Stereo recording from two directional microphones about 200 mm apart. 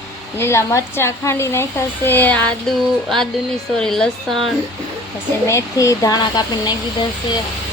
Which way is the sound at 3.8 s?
Centre (ahead or behind).